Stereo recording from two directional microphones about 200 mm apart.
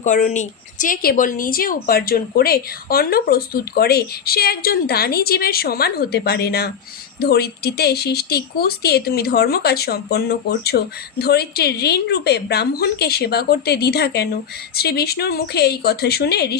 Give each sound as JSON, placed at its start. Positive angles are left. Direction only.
{"t": 0.0, "sound": "a woman's voice", "side_deg": 35}